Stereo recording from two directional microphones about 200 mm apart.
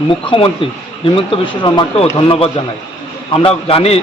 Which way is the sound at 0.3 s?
25° left (ahead or behind).